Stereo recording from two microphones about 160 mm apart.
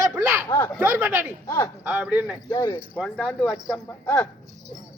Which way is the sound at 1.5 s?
20° left (ahead or behind).